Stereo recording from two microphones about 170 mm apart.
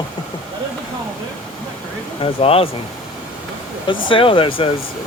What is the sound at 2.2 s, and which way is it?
Speech, 35° left (ahead or behind).